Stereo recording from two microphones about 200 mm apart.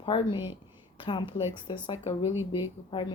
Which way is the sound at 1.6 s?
25° left (ahead or behind).